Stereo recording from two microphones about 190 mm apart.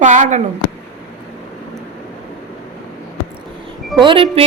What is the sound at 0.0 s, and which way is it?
Speech, 40° right (ahead or behind).